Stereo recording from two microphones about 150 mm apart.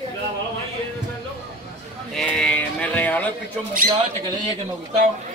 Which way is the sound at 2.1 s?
5° left (ahead or behind).